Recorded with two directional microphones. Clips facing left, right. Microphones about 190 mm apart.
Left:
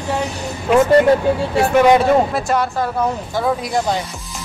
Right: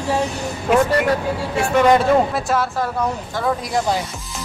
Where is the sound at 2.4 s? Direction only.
Centre (ahead or behind).